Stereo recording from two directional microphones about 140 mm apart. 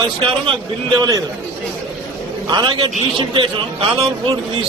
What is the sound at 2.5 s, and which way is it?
A man's voice, 35° right (ahead or behind).